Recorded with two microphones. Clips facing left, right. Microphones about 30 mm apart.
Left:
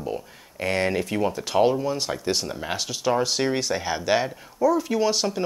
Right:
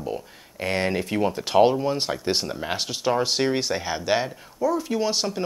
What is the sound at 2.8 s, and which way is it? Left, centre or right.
Speech, centre.